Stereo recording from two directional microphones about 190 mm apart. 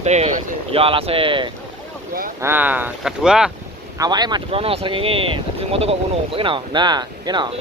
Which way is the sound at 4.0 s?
20° right (ahead or behind).